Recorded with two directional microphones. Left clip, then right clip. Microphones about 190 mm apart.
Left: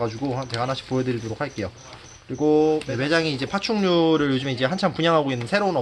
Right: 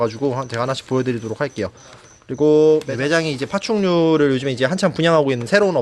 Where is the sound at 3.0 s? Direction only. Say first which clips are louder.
Right 3 dB; 50° right (ahead or behind).